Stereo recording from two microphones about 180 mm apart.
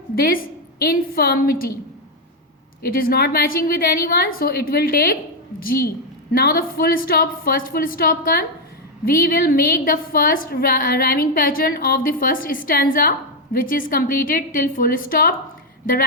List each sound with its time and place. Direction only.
0.2 s a woman's voice: 55° left (ahead or behind)
2.8 s a woman's voice: 55° left (ahead or behind)